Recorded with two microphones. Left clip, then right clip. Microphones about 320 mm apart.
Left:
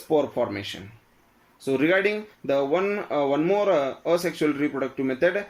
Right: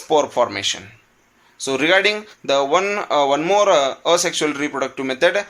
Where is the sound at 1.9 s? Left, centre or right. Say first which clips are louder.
Right 6 dB; right.